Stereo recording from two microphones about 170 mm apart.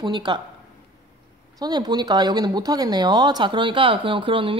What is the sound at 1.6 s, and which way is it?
Speech, 25° right (ahead or behind).